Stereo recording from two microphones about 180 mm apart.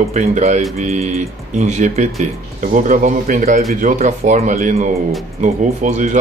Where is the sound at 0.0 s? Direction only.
40° right (ahead or behind).